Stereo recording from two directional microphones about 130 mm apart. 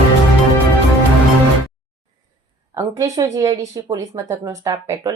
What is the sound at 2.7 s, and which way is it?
A woman's voice, 25° right (ahead or behind).